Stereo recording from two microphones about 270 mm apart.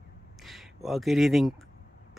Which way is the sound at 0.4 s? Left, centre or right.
Centre.